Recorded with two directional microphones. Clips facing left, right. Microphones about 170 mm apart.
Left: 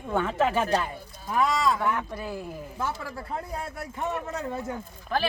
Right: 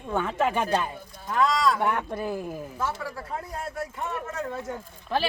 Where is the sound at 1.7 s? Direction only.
55° right (ahead or behind).